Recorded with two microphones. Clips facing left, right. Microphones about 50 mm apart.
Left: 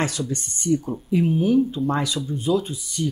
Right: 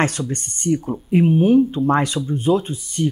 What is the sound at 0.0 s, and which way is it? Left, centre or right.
Speech, right.